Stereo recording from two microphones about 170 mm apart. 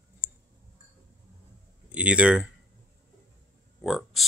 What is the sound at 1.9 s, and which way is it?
Speech, 5° right (ahead or behind).